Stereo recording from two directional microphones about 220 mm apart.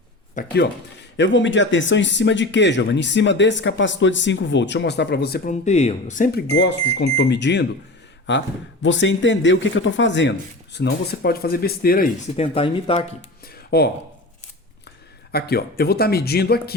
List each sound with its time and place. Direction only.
0.3 s speech: 50° left (ahead or behind)
5.6 s speech: 30° left (ahead or behind)
6.5 s speech: 55° left (ahead or behind)
12.4 s speech: 25° left (ahead or behind)
13.5 s a sound: 45° left (ahead or behind)
15.3 s speech: 45° left (ahead or behind)